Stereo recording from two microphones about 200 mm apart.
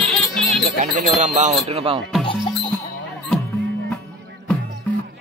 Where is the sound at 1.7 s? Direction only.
30° right (ahead or behind).